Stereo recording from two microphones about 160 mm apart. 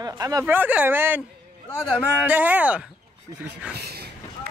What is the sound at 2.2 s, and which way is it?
Speech, 10° right (ahead or behind).